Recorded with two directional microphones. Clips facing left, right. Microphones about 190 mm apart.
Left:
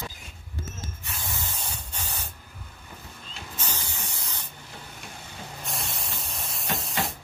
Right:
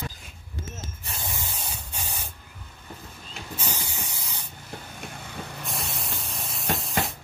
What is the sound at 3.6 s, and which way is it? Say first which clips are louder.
Spray: right 1 dB; 10° right (ahead or behind).